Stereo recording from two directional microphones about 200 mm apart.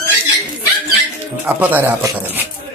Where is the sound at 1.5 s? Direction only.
10° right (ahead or behind).